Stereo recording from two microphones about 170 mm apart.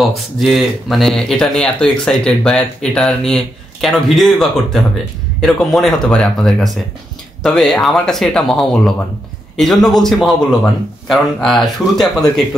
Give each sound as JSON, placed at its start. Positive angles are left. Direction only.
{"t": 0.1, "sound": "speech", "side_deg": 0}